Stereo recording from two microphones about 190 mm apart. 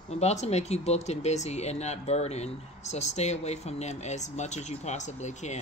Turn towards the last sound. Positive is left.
turn(degrees=35)  # may be behind; listen again after turning